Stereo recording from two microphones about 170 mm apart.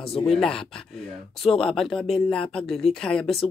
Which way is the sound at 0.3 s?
5° left (ahead or behind).